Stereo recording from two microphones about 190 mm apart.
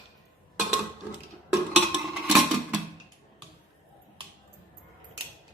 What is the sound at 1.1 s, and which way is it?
Cutlery, 5° right (ahead or behind).